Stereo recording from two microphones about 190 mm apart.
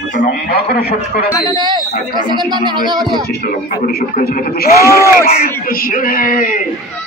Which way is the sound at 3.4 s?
55° left (ahead or behind).